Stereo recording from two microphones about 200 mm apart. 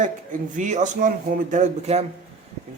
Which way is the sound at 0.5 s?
35° right (ahead or behind).